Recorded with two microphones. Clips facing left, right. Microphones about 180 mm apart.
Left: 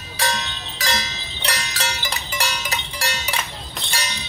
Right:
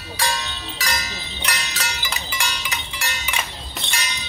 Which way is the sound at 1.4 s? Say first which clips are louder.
Left 3 dB; 35° left (ahead or behind).